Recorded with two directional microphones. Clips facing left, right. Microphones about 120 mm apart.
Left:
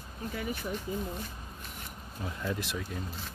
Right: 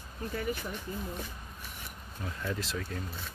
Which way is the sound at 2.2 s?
20° left (ahead or behind).